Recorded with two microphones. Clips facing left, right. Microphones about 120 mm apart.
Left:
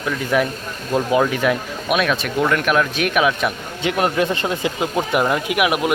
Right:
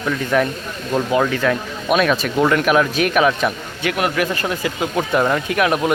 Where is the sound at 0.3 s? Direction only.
5° left (ahead or behind).